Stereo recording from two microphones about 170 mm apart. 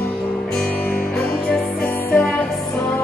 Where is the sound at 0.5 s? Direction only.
10° left (ahead or behind).